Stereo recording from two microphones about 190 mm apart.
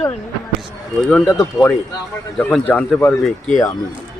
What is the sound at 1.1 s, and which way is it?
Speech, 5° left (ahead or behind).